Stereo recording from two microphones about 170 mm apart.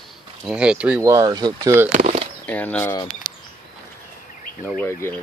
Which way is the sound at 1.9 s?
50° right (ahead or behind).